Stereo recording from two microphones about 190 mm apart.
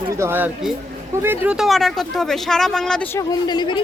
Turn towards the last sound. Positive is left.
turn(degrees=25)  # may be behind; listen again after turning